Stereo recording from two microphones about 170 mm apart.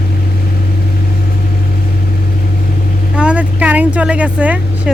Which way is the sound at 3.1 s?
5° right (ahead or behind).